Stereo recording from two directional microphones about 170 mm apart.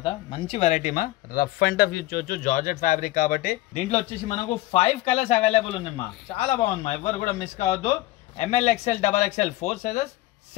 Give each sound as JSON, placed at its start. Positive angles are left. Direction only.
{"t": 0.0, "sound": "speech", "side_deg": 30}